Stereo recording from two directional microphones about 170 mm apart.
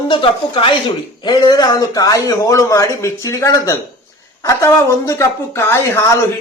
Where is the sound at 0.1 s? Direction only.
30° left (ahead or behind).